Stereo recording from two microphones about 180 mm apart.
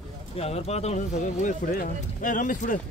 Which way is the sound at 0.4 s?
35° left (ahead or behind).